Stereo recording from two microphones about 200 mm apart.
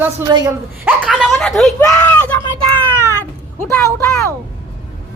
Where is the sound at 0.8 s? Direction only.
5° right (ahead or behind).